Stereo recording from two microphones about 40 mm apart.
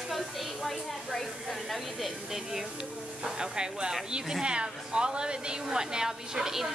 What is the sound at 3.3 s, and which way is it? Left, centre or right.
A woman's voice, centre.